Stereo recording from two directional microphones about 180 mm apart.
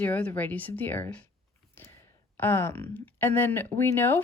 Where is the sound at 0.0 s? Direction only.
10° left (ahead or behind).